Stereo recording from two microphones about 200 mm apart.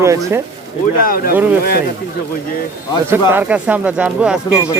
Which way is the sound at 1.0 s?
45° left (ahead or behind).